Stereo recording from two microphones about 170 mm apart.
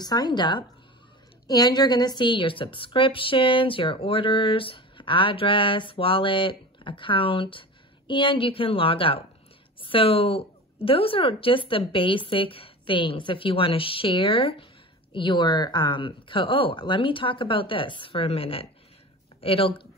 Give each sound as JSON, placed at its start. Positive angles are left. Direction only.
{"t": 0.0, "sound": "a woman's voice", "side_deg": 25}